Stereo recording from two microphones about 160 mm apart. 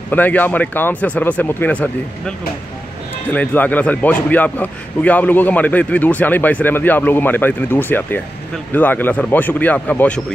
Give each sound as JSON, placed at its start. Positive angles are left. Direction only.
{"t": 0.1, "sound": "a man's voice", "side_deg": 10}